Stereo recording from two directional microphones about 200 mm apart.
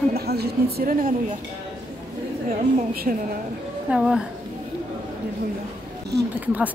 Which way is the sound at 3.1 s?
45° right (ahead or behind).